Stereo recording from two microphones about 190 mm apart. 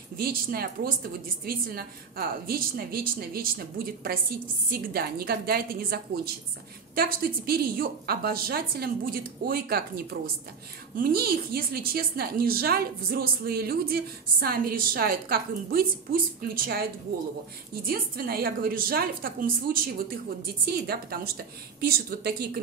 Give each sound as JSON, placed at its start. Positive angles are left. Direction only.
{"t": 0.2, "sound": "a woman's voice", "side_deg": -50}
{"t": 17.8, "sound": "a woman's voice", "side_deg": -55}